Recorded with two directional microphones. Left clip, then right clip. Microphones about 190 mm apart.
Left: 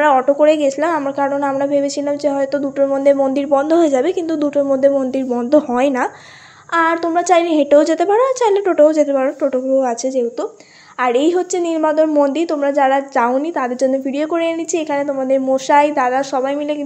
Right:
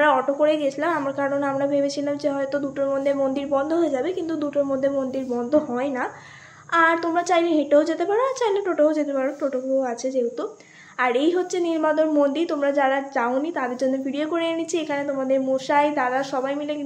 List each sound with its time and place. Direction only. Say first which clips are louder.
0.0 s a woman's voice: left 7 dB; 35° left (ahead or behind)
5.8 s speech: left 10 dB; 45° left (ahead or behind)
6.7 s a woman's voice: left 4 dB; 35° left (ahead or behind)